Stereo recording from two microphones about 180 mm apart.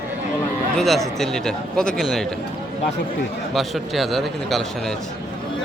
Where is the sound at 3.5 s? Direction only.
Centre (ahead or behind).